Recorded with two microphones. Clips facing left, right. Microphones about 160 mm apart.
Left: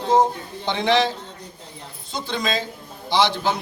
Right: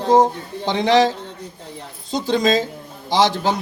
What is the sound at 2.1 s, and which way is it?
Speech, 40° right (ahead or behind).